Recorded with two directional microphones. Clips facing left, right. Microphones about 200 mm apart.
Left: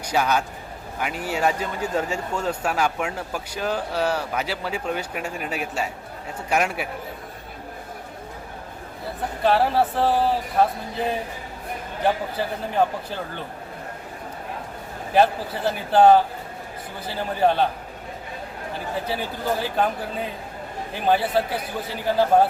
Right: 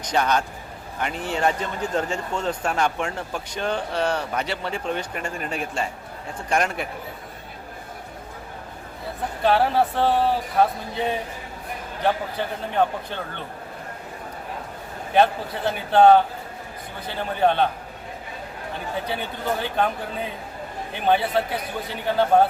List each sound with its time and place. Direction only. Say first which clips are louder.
0.0 s a man's voice: even; 5° left (ahead or behind)
9.4 s speech: even; centre (ahead or behind)
15.1 s speech: even; 5° left (ahead or behind)
18.9 s speech: left 1 dB; 5° left (ahead or behind)